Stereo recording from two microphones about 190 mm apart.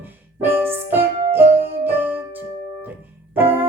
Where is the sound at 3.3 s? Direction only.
10° right (ahead or behind).